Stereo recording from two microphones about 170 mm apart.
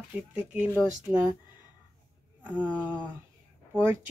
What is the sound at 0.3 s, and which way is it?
Speech, 10° right (ahead or behind).